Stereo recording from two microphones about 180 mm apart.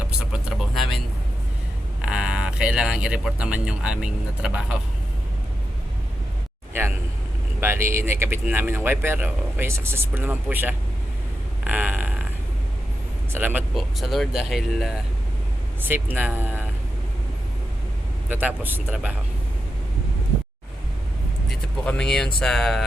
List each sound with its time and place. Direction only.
0.3 s vehicle: centre (ahead or behind)
2.0 s speech: 5° right (ahead or behind)
6.8 s a sound: 10° right (ahead or behind)
7.6 s speech: 15° right (ahead or behind)
11.6 s fart: 10° right (ahead or behind)
13.3 s speech: 10° right (ahead or behind)
13.7 s speech: centre (ahead or behind)
18.3 s speech: 10° right (ahead or behind)
21.5 s vehicle: 5° left (ahead or behind)
22.4 s speech: centre (ahead or behind)